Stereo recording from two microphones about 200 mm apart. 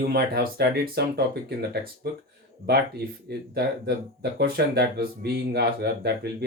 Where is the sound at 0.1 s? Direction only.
50° right (ahead or behind).